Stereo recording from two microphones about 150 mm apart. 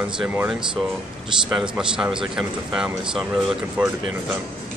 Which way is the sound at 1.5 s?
5° right (ahead or behind).